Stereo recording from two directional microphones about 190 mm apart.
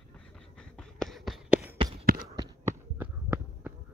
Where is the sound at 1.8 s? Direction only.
30° right (ahead or behind).